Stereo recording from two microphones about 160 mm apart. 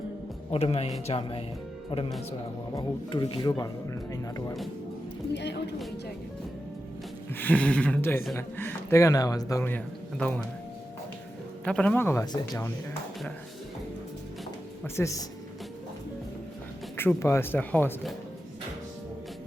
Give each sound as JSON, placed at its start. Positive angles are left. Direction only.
{"t": 0.5, "sound": "speech", "side_deg": 40}
{"t": 5.3, "sound": "speech", "side_deg": 90}
{"t": 7.3, "sound": "a man's voice", "side_deg": 10}
{"t": 11.6, "sound": "a man's voice", "side_deg": 5}
{"t": 12.2, "sound": "speech", "side_deg": 25}
{"t": 14.9, "sound": "speech", "side_deg": 20}
{"t": 17.0, "sound": "a man's voice", "side_deg": 15}